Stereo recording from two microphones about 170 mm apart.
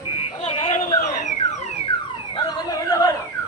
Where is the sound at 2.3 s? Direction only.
25° left (ahead or behind).